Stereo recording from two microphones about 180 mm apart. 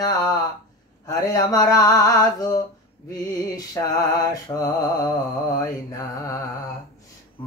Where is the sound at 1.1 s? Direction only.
20° left (ahead or behind).